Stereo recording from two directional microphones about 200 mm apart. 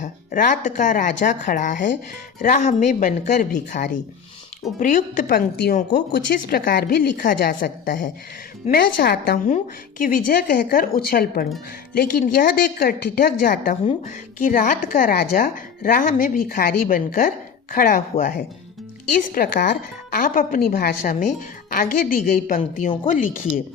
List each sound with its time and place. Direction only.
0.0 s a woman's voice: 40° left (ahead or behind)